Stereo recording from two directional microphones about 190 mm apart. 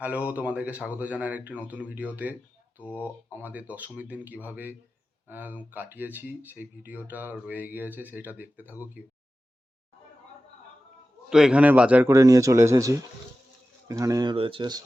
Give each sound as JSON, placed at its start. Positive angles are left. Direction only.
{"t": 0.0, "sound": "speech", "side_deg": -5}
{"t": 11.3, "sound": "speech", "side_deg": -5}